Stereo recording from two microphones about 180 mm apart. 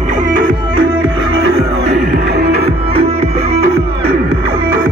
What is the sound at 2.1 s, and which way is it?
Music, 60° right (ahead or behind).